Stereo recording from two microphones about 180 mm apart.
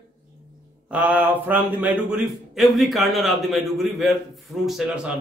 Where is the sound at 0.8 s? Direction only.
10° right (ahead or behind).